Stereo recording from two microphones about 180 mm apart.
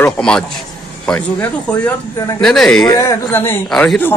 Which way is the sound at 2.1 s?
20° left (ahead or behind).